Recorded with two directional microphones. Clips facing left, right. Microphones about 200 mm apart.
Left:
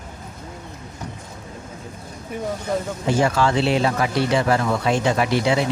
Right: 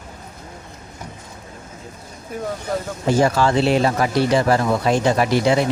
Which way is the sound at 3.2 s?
40° right (ahead or behind).